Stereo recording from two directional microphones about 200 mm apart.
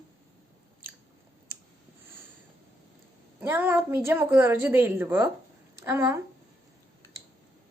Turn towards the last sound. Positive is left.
turn(degrees=15)  # may be behind; listen again after turning